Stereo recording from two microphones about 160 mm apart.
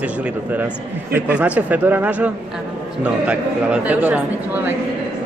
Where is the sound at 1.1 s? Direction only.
10° right (ahead or behind).